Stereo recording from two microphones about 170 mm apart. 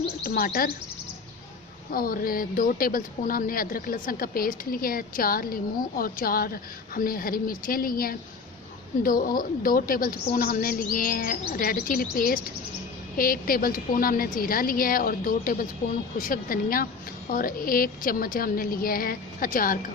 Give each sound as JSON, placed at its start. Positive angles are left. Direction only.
{"t": 0.3, "sound": "a woman's voice", "side_deg": 60}
{"t": 1.9, "sound": "a woman's voice", "side_deg": 60}